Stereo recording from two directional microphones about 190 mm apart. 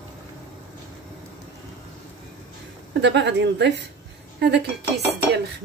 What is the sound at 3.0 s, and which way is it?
A woman's voice, 65° right (ahead or behind).